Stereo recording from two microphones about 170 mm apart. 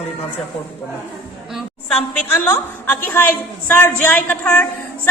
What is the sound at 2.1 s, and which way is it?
A man's voice, 10° left (ahead or behind).